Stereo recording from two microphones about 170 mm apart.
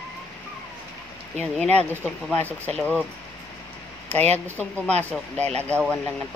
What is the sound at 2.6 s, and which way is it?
Speech, 10° left (ahead or behind).